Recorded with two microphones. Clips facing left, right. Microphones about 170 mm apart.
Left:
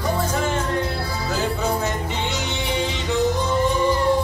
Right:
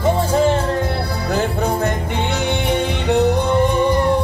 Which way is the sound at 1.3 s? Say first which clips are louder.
Right 4 dB; 55° right (ahead or behind).